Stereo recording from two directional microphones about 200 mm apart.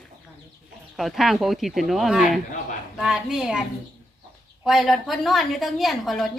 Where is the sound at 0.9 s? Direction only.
Centre (ahead or behind).